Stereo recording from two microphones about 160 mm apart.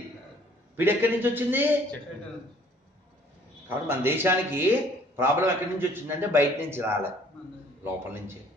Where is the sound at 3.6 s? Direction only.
15° right (ahead or behind).